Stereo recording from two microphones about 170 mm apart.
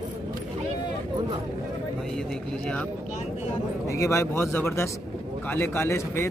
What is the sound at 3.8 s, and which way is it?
Speech, 20° left (ahead or behind).